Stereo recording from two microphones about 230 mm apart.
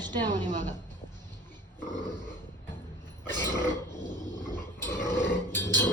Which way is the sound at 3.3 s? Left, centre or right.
Centre.